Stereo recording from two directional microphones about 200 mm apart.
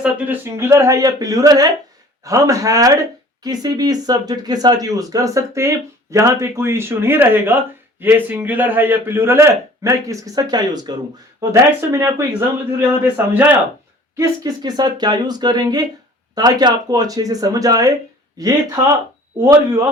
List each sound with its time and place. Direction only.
0.0 s speech: 10° right (ahead or behind)